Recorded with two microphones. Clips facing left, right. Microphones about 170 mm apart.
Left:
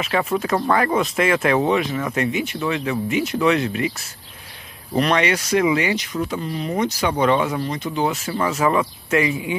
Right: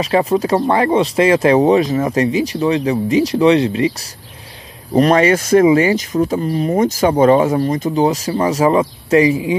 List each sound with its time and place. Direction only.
0.0 s speech: 35° right (ahead or behind)
4.9 s speech: 40° right (ahead or behind)